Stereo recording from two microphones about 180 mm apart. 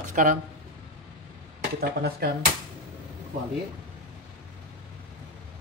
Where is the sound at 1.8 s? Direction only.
60° right (ahead or behind).